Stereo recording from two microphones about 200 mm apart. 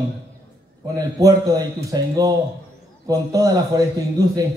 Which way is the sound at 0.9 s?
15° right (ahead or behind).